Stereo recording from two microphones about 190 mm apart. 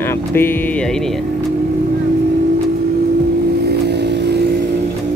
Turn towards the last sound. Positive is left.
turn(degrees=-60)  # may be behind; listen again after turning